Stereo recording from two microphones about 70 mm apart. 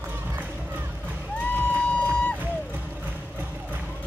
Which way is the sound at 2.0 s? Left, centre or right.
Centre.